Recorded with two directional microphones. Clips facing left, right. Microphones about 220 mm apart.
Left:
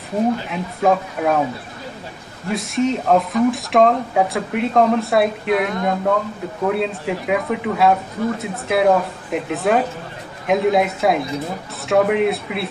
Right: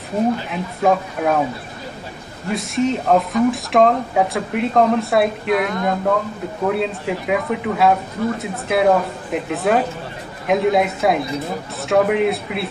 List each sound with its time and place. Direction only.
0.5 s speech: centre (ahead or behind)
2.5 s speech: centre (ahead or behind)